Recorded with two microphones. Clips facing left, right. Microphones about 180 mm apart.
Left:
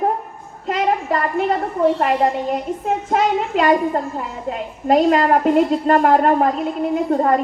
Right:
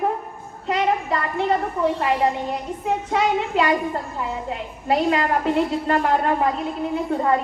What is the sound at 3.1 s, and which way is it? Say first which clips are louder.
A woman's voice: left 3 dB; 45° left (ahead or behind).